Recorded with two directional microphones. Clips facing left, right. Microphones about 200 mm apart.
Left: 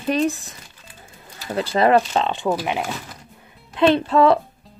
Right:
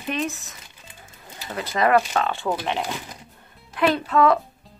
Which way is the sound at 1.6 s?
30° left (ahead or behind).